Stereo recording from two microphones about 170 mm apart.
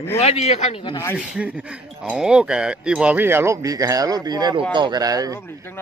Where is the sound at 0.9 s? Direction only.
15° left (ahead or behind).